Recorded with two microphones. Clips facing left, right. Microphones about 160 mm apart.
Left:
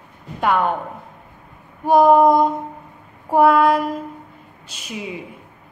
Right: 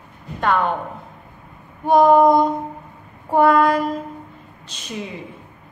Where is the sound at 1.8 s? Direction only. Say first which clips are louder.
Even; 5° left (ahead or behind).